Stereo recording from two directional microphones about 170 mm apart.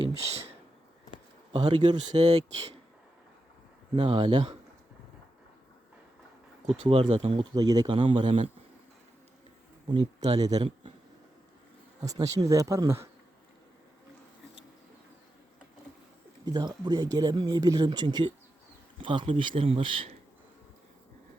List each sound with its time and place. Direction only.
1.5 s speech: 30° right (ahead or behind)
2.2 s speech: 40° right (ahead or behind)
3.9 s speech: 30° right (ahead or behind)
6.8 s speech: 30° right (ahead or behind)
9.9 s speech: 25° right (ahead or behind)
11.9 s speech: 20° right (ahead or behind)
16.5 s speech: 25° right (ahead or behind)